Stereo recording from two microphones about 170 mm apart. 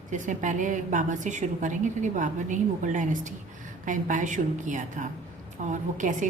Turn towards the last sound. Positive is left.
turn(degrees=-45)  # may be behind; listen again after turning